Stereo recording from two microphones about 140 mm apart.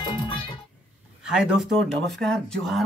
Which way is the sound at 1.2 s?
5° right (ahead or behind).